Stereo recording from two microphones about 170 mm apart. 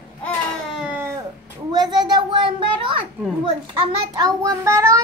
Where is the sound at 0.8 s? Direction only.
10° right (ahead or behind).